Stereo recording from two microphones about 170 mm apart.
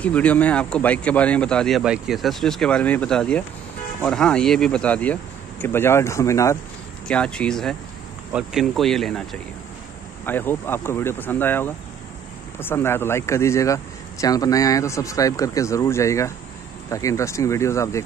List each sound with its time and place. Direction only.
0.0 s speech: 10° left (ahead or behind)
7.1 s speech: 5° left (ahead or behind)